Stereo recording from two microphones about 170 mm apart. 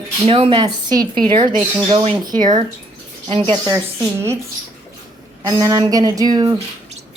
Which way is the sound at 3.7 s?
15° right (ahead or behind).